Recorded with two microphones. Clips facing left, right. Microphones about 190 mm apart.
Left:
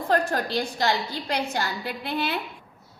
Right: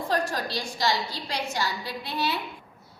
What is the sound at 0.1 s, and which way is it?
A woman's voice, 55° left (ahead or behind).